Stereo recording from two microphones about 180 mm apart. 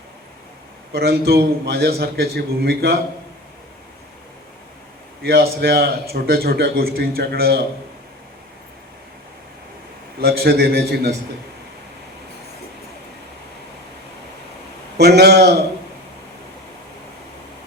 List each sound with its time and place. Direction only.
0.9 s a man's voice: 60° right (ahead or behind)
5.2 s a man's voice: 60° right (ahead or behind)
10.2 s a man's voice: 60° right (ahead or behind)
14.9 s speech: 65° right (ahead or behind)